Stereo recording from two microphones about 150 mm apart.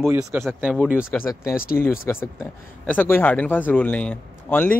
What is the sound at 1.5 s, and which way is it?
Speech, 80° left.